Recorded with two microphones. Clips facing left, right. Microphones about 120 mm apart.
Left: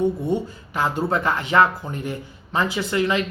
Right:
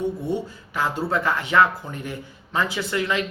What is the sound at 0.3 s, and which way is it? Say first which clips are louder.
Speech: left 3 dB; 15° left (ahead or behind).